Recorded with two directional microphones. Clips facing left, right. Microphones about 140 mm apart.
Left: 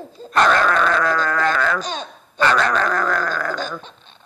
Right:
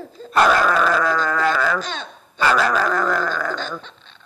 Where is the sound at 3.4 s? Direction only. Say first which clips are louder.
Left 1 dB; 10° left (ahead or behind).